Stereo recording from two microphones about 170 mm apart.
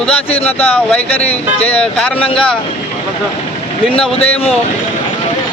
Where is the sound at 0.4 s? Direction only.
10° left (ahead or behind).